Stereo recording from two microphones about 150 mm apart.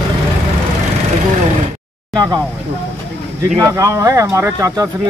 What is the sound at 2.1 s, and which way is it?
Speech, 25° right (ahead or behind).